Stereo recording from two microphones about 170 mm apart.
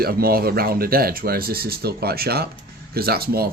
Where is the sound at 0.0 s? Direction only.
60° right (ahead or behind).